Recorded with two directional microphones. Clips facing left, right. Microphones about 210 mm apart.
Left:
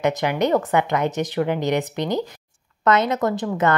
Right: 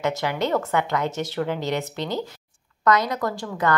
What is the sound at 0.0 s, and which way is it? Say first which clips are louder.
A woman's voice: left 4 dB; 15° left (ahead or behind).